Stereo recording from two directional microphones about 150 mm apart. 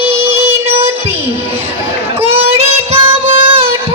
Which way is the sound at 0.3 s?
45° right (ahead or behind).